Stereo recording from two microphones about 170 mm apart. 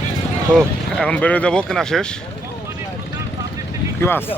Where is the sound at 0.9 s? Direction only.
5° left (ahead or behind).